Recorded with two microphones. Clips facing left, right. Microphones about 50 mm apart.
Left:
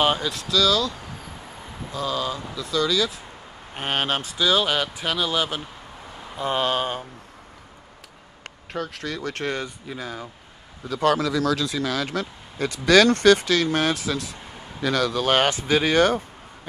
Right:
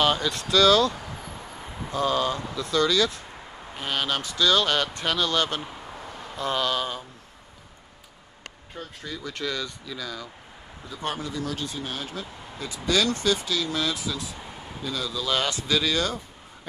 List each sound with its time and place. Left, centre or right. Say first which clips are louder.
0.2 s speech: even; centre
0.5 s speech: right 3 dB; right
2.1 s speech: right 2 dB; centre
3.7 s speech: left 3 dB; left
4.4 s speech: even; centre
6.3 s speech: left 3 dB; left
8.7 s speech: left 8 dB; left
10.8 s a man's voice: left 11 dB; left
15.5 s speech: left 5 dB; left